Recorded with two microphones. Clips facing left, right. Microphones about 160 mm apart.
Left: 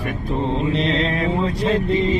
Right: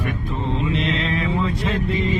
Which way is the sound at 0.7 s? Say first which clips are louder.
Left 2 dB; 35° left (ahead or behind).